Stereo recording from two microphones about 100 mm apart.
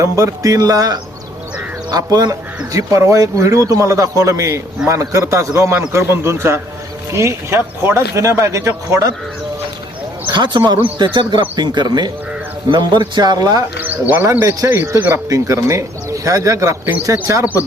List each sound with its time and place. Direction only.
0.0 s a man's voice: 35° right (ahead or behind)
10.2 s speech: 50° right (ahead or behind)
13.8 s speech: 20° right (ahead or behind)
14.3 s a man's voice: 30° right (ahead or behind)